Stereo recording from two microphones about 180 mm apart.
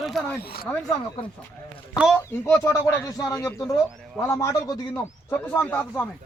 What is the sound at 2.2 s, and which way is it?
Speech, 15° left (ahead or behind).